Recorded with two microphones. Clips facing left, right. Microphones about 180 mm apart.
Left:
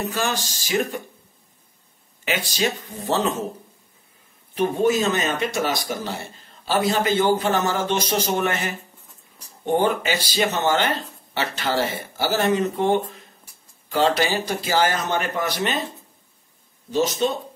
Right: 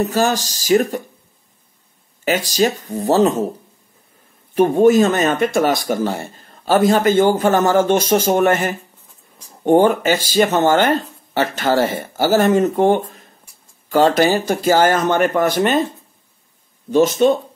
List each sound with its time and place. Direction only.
0.0 s speech: 40° right (ahead or behind)
2.2 s speech: 40° right (ahead or behind)
4.6 s speech: 50° right (ahead or behind)
16.9 s speech: 55° right (ahead or behind)